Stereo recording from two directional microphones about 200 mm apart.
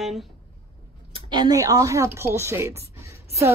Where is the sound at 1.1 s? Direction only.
20° right (ahead or behind).